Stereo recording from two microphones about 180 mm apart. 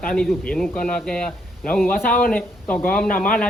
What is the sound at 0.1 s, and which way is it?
A man's voice, 5° left (ahead or behind).